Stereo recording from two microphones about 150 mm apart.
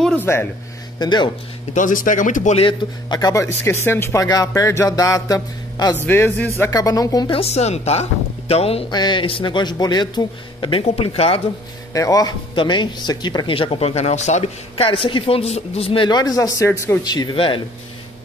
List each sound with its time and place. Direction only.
0.0 s a sound: 10° left (ahead or behind)
0.9 s speech: 30° left (ahead or behind)
1.7 s speech: 60° left (ahead or behind)
2.6 s speech: 25° left (ahead or behind)
6.0 s a man's voice: 10° left (ahead or behind)
6.6 s speech: 25° left (ahead or behind)
7.3 s speech: 45° left (ahead or behind)
8.9 s speech: 30° left (ahead or behind)
11.9 s speech: 20° left (ahead or behind)